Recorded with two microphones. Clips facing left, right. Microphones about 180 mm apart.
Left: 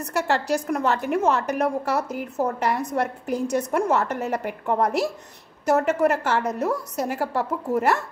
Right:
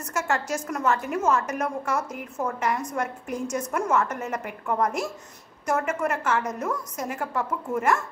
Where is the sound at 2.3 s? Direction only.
35° left (ahead or behind).